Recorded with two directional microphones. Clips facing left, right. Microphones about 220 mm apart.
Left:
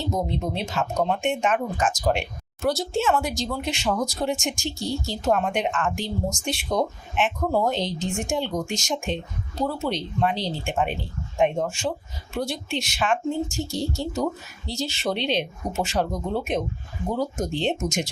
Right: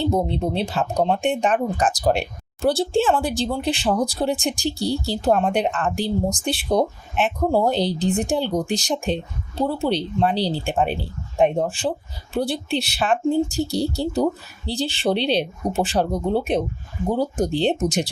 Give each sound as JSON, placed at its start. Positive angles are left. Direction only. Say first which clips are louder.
{"t": 0.0, "sound": "speech", "louder": "right 5 dB", "side_deg": -30}